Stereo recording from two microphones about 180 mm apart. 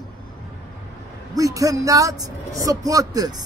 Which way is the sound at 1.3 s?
20° right (ahead or behind).